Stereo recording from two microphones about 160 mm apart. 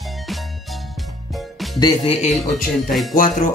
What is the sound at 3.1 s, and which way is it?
Speech, 60° left (ahead or behind).